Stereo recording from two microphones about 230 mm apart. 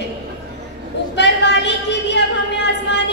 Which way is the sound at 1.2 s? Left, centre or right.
Left.